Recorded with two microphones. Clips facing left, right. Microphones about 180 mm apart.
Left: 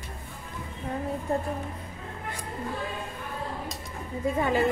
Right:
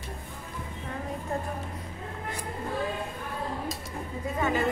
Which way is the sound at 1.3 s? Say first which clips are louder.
Left 4 dB; 35° left (ahead or behind).